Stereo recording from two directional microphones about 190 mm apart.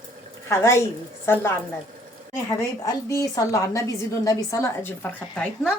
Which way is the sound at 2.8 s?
20° left (ahead or behind).